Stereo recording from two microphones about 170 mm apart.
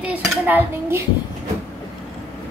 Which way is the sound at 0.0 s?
10° right (ahead or behind).